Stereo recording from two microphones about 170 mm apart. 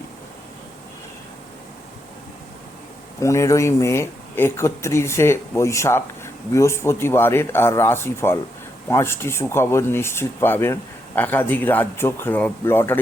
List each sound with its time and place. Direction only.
3.2 s speech: 20° left (ahead or behind)